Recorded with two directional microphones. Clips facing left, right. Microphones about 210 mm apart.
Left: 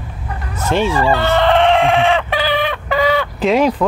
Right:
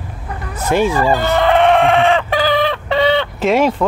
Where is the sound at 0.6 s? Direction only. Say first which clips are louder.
Right 1 dB; 10° right (ahead or behind).